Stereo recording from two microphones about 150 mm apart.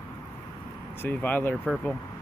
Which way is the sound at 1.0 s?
10° left (ahead or behind).